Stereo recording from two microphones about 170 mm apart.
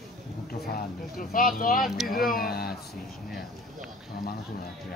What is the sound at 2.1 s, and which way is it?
Speech, 60° left (ahead or behind).